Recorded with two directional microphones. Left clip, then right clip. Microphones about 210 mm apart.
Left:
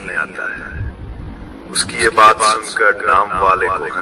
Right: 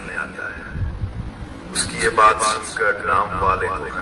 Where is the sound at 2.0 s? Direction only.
45° left (ahead or behind).